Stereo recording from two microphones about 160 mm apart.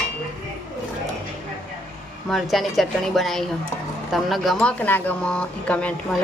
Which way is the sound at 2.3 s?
Centre (ahead or behind).